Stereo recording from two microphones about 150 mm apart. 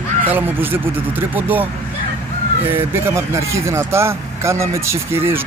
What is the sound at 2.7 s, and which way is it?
Speech, 15° right (ahead or behind).